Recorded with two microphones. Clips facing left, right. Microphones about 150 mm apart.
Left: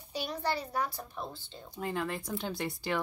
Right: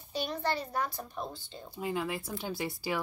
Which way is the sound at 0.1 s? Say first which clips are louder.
Right 1 dB; 10° left (ahead or behind).